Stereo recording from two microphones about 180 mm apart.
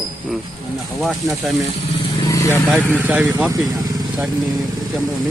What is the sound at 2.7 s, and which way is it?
Speech, 10° right (ahead or behind).